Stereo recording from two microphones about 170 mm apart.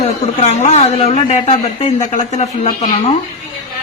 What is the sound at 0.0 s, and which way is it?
Speech, 40° left (ahead or behind).